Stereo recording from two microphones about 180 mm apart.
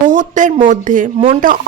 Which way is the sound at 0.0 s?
45° right (ahead or behind).